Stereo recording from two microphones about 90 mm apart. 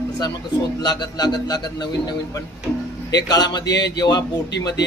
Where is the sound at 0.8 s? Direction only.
50° left (ahead or behind).